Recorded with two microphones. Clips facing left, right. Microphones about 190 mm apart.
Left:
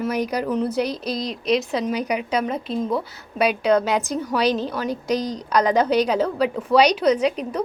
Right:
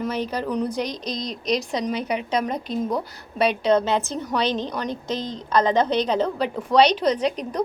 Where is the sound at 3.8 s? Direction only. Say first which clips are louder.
Left 1 dB; 10° left (ahead or behind).